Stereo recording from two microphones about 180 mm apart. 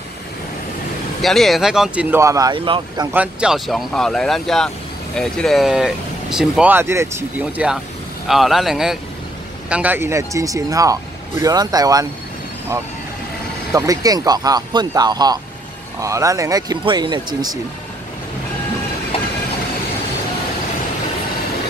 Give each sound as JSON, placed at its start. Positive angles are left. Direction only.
{"t": 1.2, "sound": "speech", "side_deg": 0}
{"t": 3.1, "sound": "speech", "side_deg": -5}
{"t": 13.7, "sound": "speech", "side_deg": -20}
{"t": 19.1, "sound": "train", "side_deg": 30}